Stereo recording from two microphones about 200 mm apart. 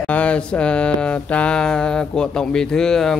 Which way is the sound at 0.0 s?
5° left (ahead or behind).